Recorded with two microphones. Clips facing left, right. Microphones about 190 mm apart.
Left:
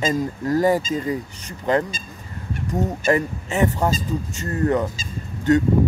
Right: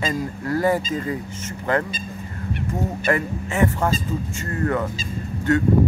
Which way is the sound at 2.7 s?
20° left (ahead or behind).